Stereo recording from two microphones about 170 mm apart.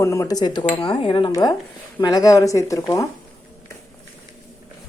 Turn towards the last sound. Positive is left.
turn(degrees=20)  # may be behind; listen again after turning